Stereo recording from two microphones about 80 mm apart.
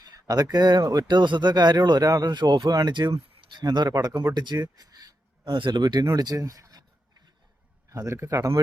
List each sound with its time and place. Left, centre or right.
0.5 s speech: right
1.1 s speech: right
2.6 s speech: right
4.4 s a sound: right
5.5 s speech: right
6.1 s speech: right
7.9 s speech: right